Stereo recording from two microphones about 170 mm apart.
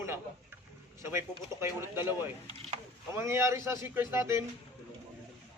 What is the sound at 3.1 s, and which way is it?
A man's voice, 15° right (ahead or behind).